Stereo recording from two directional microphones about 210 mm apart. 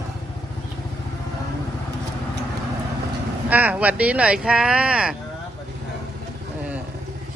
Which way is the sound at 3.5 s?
10° right (ahead or behind).